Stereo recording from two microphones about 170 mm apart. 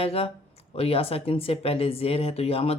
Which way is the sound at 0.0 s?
35° left (ahead or behind).